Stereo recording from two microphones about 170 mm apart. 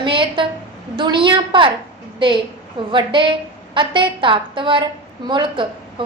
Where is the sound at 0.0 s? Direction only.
30° right (ahead or behind).